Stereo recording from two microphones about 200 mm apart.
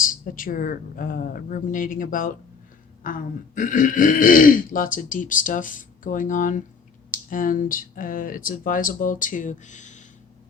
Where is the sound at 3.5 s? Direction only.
40° left (ahead or behind).